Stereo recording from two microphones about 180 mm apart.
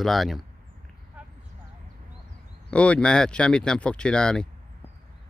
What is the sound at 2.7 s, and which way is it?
Speech, 5° left (ahead or behind).